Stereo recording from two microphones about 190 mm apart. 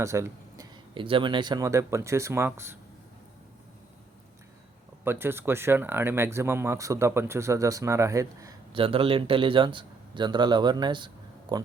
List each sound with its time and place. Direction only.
0.0 s speech: 15° right (ahead or behind)
5.0 s speech: 10° right (ahead or behind)